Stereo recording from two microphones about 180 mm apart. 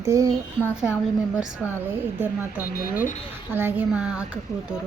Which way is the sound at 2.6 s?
55° left (ahead or behind).